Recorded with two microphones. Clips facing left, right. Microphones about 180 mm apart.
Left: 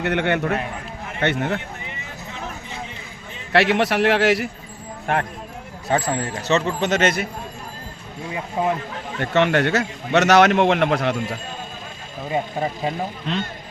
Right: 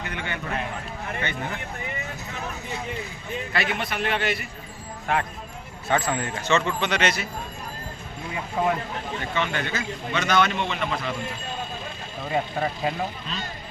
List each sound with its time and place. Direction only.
0.0 s a man's voice: 70° left (ahead or behind)
3.5 s a man's voice: 75° left (ahead or behind)
5.9 s speech: 35° left (ahead or behind)
8.6 s a man's voice: 20° left (ahead or behind)
9.2 s a man's voice: 70° left (ahead or behind)
12.3 s speech: 20° left (ahead or behind)